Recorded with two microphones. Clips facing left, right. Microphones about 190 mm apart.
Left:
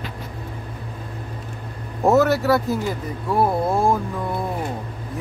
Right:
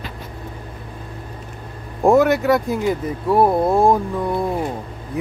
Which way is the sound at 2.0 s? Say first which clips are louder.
Right 2 dB; 15° right (ahead or behind).